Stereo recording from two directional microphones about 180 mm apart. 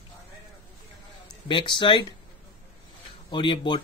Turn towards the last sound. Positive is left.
turn(degrees=25)  # may be behind; listen again after turning